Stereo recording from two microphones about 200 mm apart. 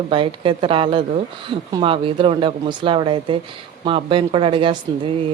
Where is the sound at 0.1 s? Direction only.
25° right (ahead or behind).